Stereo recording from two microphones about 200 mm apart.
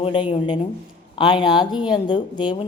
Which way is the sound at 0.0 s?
25° left (ahead or behind).